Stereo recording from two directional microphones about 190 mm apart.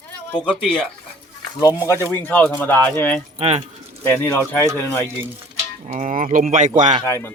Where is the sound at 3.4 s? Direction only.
30° right (ahead or behind).